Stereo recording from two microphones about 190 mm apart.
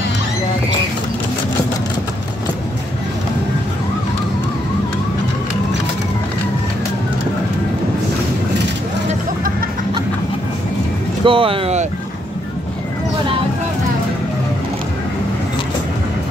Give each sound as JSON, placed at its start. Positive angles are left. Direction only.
{"t": 11.2, "sound": "speech", "side_deg": -30}